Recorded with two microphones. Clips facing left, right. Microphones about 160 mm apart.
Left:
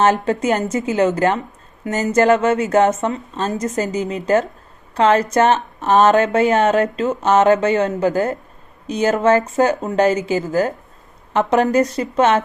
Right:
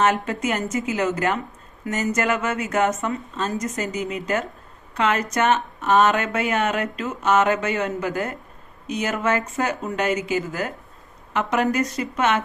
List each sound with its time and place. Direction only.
0.0 s speech: 30° left (ahead or behind)